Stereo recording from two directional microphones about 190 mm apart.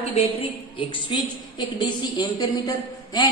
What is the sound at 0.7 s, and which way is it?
A woman's voice, 25° left (ahead or behind).